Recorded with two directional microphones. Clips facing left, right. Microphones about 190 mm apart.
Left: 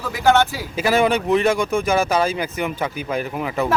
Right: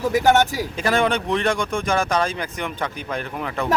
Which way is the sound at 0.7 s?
5° left (ahead or behind).